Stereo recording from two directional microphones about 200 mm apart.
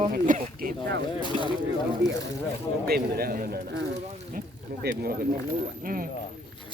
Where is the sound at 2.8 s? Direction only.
50° right (ahead or behind).